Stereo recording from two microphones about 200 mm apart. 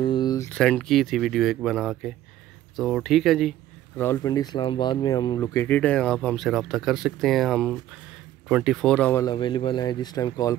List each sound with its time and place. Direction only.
0.0 s a sound: 20° left (ahead or behind)
0.5 s speech: 5° left (ahead or behind)
9.2 s speech: 20° left (ahead or behind)